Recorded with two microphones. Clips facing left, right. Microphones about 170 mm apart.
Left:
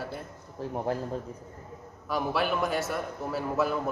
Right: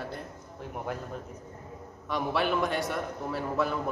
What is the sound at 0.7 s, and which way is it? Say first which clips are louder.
Speech: left 5 dB; 30° left (ahead or behind).